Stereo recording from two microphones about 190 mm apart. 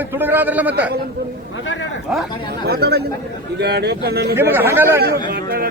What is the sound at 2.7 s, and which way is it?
A man's voice, 55° right (ahead or behind).